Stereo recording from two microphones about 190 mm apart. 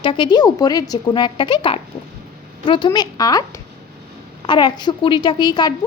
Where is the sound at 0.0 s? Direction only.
25° left (ahead or behind).